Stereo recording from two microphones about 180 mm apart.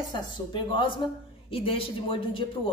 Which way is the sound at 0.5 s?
25° left (ahead or behind).